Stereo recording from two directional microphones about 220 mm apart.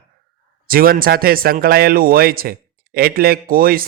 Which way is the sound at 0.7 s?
40° right (ahead or behind).